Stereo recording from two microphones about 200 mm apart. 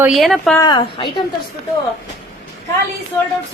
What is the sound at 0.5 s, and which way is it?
Speech, 20° left (ahead or behind).